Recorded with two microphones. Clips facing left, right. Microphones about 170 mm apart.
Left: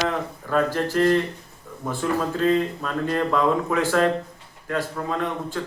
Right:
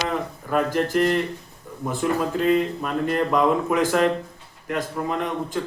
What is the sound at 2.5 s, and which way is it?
Speech, 15° right (ahead or behind).